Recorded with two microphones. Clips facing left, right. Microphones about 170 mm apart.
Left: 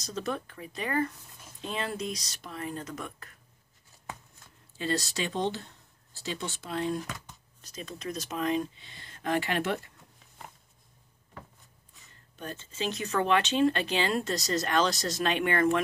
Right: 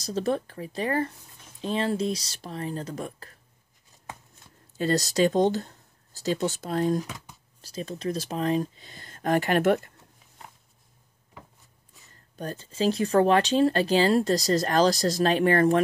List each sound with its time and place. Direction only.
0.0 s speech: 35° right (ahead or behind)
4.7 s speech: 40° right (ahead or behind)
12.4 s speech: 35° right (ahead or behind)